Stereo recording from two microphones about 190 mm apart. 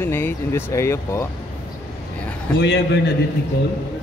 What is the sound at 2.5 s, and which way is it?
Speech, 65° left (ahead or behind).